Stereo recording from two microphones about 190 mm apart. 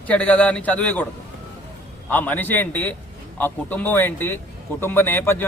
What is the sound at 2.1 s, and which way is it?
A man's voice, 10° left (ahead or behind).